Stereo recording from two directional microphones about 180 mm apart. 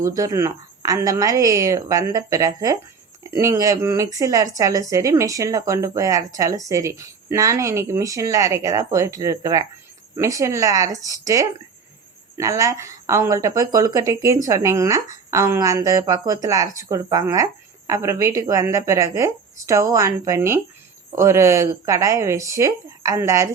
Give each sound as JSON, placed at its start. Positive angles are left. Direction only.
{"t": 0.0, "sound": "a woman's voice", "side_deg": -20}